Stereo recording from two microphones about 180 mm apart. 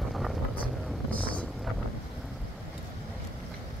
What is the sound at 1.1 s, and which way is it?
Wind noise, 5° left (ahead or behind).